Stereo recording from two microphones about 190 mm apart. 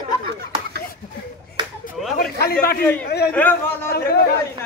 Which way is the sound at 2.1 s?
55° left (ahead or behind).